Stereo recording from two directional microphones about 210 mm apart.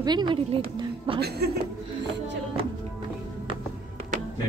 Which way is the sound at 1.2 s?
50° right (ahead or behind).